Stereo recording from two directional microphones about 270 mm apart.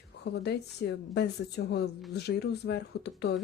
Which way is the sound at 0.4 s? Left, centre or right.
Left.